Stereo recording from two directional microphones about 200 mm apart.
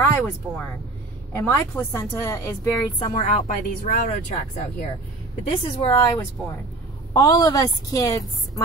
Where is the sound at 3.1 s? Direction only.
40° left (ahead or behind).